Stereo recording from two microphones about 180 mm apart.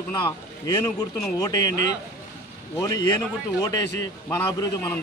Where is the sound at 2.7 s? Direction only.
20° left (ahead or behind).